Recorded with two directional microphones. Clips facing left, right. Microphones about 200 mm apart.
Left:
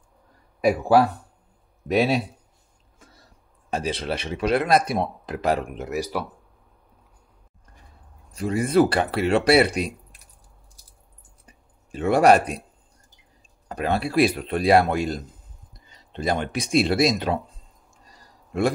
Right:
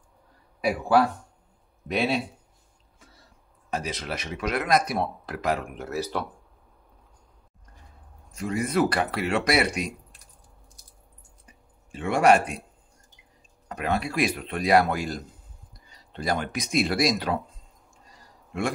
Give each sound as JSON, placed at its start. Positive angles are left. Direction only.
{"t": 0.6, "sound": "speech", "side_deg": 40}
{"t": 3.7, "sound": "speech", "side_deg": 30}
{"t": 4.9, "sound": "speech", "side_deg": 20}
{"t": 8.3, "sound": "speech", "side_deg": 35}
{"t": 11.4, "sound": "a sound", "side_deg": 40}
{"t": 13.7, "sound": "speech", "side_deg": 30}
{"t": 18.1, "sound": "a sound", "side_deg": 35}